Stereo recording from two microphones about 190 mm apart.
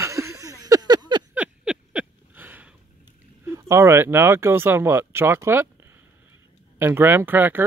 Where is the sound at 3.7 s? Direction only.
15° right (ahead or behind).